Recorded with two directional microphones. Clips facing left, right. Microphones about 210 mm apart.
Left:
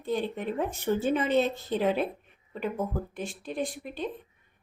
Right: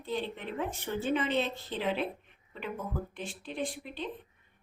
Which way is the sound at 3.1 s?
45° left (ahead or behind).